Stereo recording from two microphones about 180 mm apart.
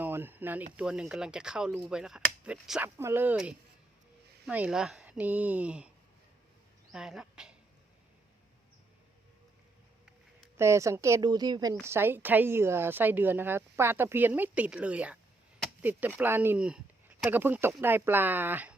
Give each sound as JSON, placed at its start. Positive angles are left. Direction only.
{"t": 0.0, "sound": "speech", "side_deg": -10}
{"t": 6.9, "sound": "speech", "side_deg": -5}
{"t": 10.6, "sound": "speech", "side_deg": -15}